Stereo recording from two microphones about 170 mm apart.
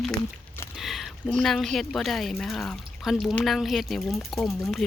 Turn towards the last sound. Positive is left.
turn(degrees=0)  # may be behind; listen again after turning